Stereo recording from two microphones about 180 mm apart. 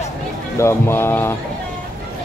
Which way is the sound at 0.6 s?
15° left (ahead or behind).